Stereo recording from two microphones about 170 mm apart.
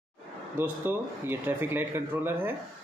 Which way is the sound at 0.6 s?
10° right (ahead or behind).